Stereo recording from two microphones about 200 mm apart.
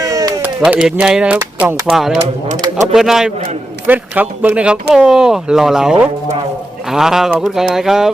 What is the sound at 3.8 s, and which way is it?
Speech, 10° right (ahead or behind).